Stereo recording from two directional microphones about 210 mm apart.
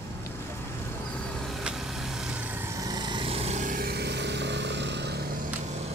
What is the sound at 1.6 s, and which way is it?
Vehicle, centre (ahead or behind).